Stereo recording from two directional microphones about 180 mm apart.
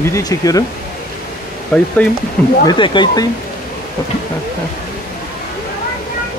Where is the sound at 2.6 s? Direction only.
25° left (ahead or behind).